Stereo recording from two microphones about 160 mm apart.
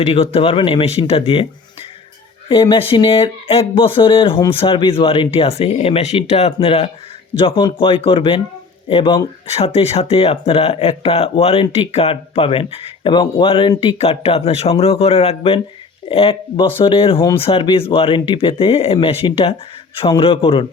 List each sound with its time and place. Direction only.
0.0 s speech: 40° left (ahead or behind)
2.5 s speech: 35° left (ahead or behind)